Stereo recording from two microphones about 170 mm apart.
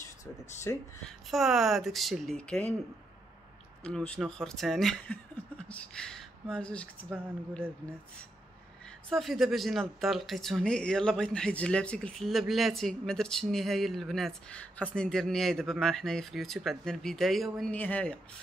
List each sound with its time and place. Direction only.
0.7 s speech: 15° left (ahead or behind)
1.0 s speech: centre (ahead or behind)
3.8 s speech: 5° left (ahead or behind)
9.1 s speech: centre (ahead or behind)